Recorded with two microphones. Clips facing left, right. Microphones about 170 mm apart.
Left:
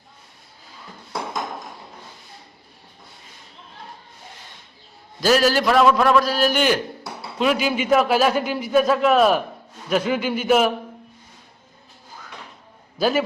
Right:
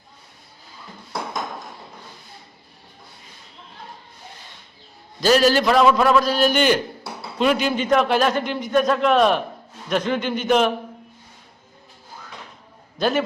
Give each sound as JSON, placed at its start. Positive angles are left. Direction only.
{"t": 5.2, "sound": "a man's voice", "side_deg": 5}
{"t": 13.0, "sound": "speech", "side_deg": 5}